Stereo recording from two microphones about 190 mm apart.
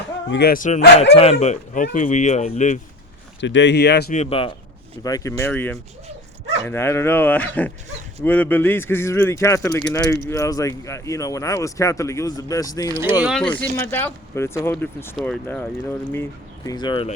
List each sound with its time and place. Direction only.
0.3 s speech: 55° left (ahead or behind)
1.1 s speech: 35° left (ahead or behind)
3.4 s speech: 70° left (ahead or behind)
4.1 s speech: 35° left (ahead or behind)
5.0 s speech: 20° left (ahead or behind)
12.9 s speech: 15° right (ahead or behind)
13.2 s speech: centre (ahead or behind)
13.6 s speech: 10° left (ahead or behind)
16.6 s speech: 25° left (ahead or behind)